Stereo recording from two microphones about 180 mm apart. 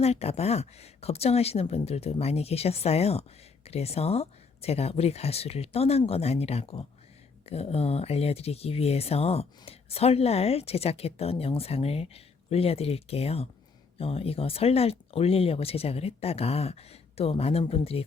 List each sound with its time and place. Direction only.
0.0 s speech: 35° left (ahead or behind)